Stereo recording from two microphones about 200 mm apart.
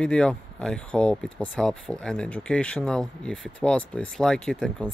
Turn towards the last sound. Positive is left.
turn(degrees=5)  # may be behind; listen again after turning